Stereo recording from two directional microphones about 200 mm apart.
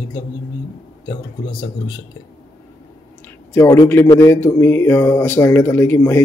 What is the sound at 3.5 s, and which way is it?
Speech, 15° left (ahead or behind).